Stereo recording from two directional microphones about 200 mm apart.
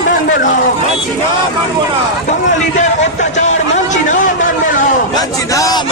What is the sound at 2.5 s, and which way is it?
Speech, 35° left (ahead or behind).